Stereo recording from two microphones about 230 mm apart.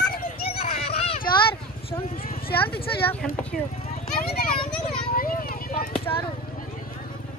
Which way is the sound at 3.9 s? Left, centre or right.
Left.